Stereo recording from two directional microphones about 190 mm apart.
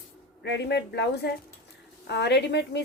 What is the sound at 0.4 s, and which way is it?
A woman's voice, 65° left (ahead or behind).